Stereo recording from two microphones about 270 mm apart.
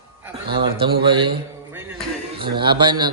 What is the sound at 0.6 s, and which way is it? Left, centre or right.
A man's voice, centre.